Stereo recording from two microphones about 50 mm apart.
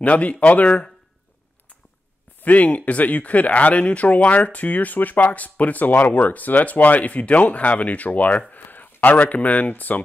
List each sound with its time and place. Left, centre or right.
0.0 s speech: left
2.4 s speech: left